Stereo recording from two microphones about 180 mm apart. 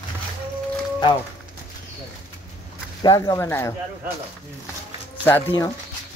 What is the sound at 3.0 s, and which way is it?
Speech, 20° left (ahead or behind).